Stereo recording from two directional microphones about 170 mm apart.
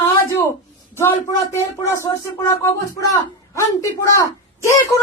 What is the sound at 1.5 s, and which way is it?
Speech, 15° left (ahead or behind).